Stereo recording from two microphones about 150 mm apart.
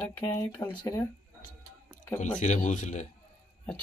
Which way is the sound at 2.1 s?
55° left (ahead or behind).